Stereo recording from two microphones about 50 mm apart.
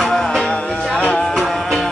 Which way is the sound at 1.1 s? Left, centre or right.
Centre.